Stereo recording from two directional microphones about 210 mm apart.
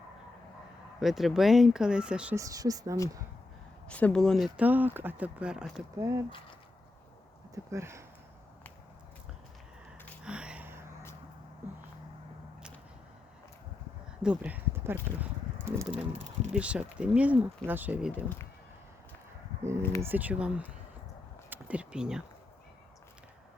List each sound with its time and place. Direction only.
0.9 s speech: centre (ahead or behind)
3.8 s speech: 5° left (ahead or behind)
6.0 s speech: 15° right (ahead or behind)
7.5 s speech: 15° right (ahead or behind)
10.2 s a sound: 5° right (ahead or behind)
14.2 s a sound: 5° right (ahead or behind)
15.9 s speech: 30° right (ahead or behind)
16.5 s speech: 5° right (ahead or behind)
20.0 s speech: 10° right (ahead or behind)